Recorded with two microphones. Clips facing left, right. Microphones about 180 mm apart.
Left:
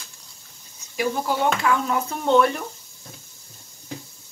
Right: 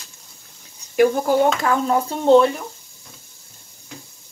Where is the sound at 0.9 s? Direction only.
50° right (ahead or behind); by 2.5 s 30° right (ahead or behind).